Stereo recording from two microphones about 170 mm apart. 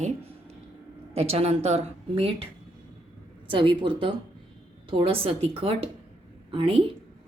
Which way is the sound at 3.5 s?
30° right (ahead or behind).